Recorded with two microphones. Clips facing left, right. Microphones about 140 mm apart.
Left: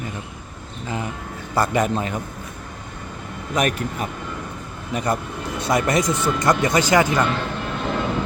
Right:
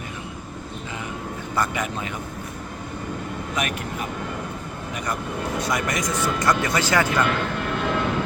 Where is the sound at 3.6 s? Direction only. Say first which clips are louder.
Left 7 dB; 40° left (ahead or behind).